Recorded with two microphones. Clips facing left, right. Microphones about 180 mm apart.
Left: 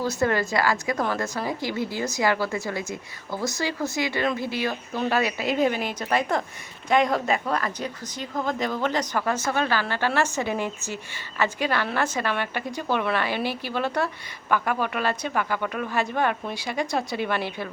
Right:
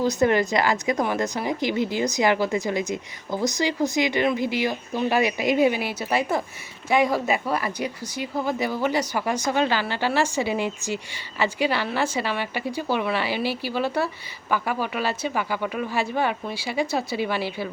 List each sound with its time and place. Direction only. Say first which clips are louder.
0.0 s a woman's voice: right 4 dB; 20° right (ahead or behind)